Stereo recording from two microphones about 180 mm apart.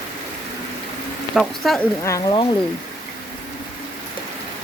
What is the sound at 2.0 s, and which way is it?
Speech, 20° left (ahead or behind).